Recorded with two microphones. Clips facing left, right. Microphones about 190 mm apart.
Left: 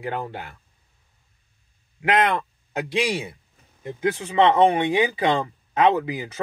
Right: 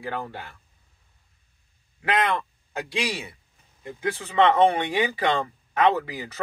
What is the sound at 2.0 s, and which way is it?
Speech, 20° left (ahead or behind).